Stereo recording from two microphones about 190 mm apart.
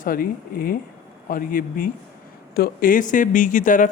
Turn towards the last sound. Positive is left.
turn(degrees=45)  # may be behind; listen again after turning